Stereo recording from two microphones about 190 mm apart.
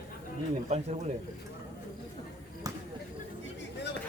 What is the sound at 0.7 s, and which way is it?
Speech, 35° right (ahead or behind).